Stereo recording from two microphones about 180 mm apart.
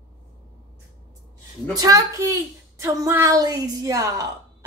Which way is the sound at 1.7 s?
20° right (ahead or behind).